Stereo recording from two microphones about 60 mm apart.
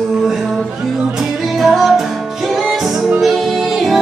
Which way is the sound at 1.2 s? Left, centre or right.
Centre.